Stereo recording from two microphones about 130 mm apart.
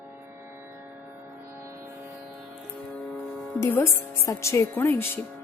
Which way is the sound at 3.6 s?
20° left (ahead or behind).